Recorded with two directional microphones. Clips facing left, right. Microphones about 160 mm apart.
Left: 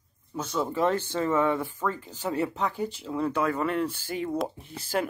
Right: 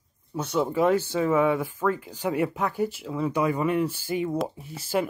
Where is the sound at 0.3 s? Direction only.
10° right (ahead or behind).